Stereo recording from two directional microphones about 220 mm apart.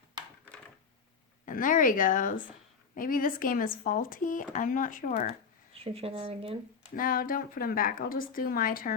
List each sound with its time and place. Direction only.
1.5 s speech: 35° left (ahead or behind)
5.7 s speech: 25° right (ahead or behind)
6.9 s speech: 40° left (ahead or behind)